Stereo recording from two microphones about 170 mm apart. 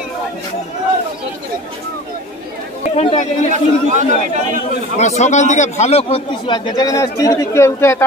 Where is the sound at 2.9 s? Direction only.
40° left (ahead or behind).